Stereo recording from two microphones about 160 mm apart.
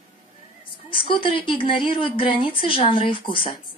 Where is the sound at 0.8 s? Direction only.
30° left (ahead or behind).